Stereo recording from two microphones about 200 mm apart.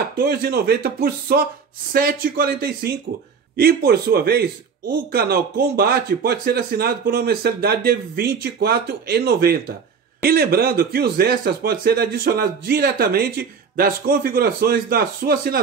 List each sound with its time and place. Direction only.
0.2 s a man's voice: 50° right (ahead or behind)